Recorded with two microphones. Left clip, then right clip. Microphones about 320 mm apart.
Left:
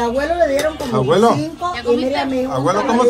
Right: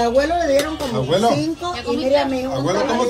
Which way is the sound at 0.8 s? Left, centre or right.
Centre.